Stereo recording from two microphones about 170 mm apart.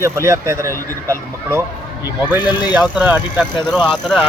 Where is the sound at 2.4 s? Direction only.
25° left (ahead or behind).